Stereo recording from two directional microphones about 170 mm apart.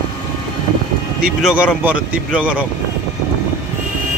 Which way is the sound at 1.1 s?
5° right (ahead or behind).